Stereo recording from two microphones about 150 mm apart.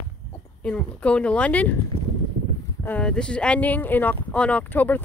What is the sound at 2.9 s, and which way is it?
Speech, 5° left (ahead or behind).